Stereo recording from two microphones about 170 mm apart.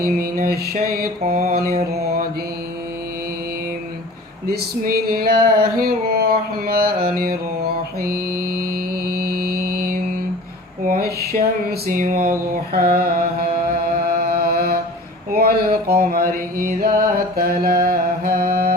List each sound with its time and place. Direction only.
0.0 s mantra: 60° right (ahead or behind)
1.2 s mantra: 40° right (ahead or behind)
1.5 s mantra: 65° right (ahead or behind)
4.4 s a sound: 65° right (ahead or behind)
12.7 s carnatic music: 60° right (ahead or behind)
13.9 s mantra: 65° right (ahead or behind)
15.3 s a sound: 60° right (ahead or behind)
16.6 s mantra: 60° right (ahead or behind)